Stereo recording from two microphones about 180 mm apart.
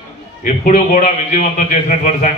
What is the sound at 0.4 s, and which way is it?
A man's voice, 45° left (ahead or behind).